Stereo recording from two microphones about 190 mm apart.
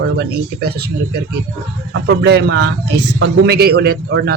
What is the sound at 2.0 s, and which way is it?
Speech, 60° right (ahead or behind).